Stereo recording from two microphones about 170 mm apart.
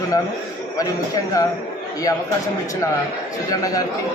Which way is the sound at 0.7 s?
20° left (ahead or behind).